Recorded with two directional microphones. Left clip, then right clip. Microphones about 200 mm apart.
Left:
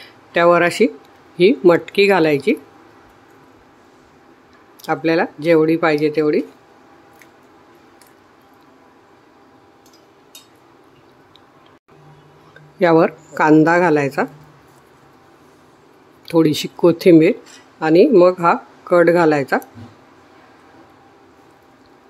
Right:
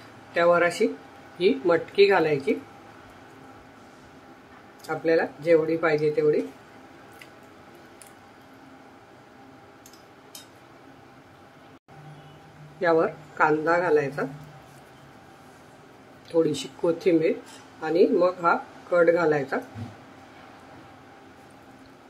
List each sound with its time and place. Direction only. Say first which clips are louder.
0.3 s speech: left 7 dB; 45° left (ahead or behind)
4.8 s speech: left 6 dB; 45° left (ahead or behind)
12.8 s speech: left 9 dB; 40° left (ahead or behind)
16.3 s speech: left 8 dB; 40° left (ahead or behind)